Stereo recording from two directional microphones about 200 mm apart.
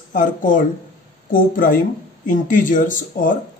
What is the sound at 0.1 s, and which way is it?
Speech, 40° left (ahead or behind).